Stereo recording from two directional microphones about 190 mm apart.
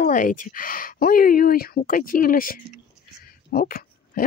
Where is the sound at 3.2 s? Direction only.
50° left (ahead or behind).